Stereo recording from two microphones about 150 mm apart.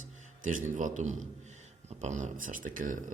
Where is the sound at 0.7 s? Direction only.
55° right (ahead or behind).